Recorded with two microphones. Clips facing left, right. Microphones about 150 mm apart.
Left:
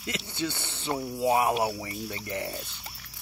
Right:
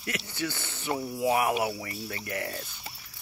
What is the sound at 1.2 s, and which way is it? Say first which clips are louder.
Speech: left 2 dB; 25° left (ahead or behind).